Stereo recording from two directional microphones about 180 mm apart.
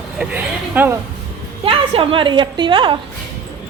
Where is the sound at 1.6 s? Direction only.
30° right (ahead or behind).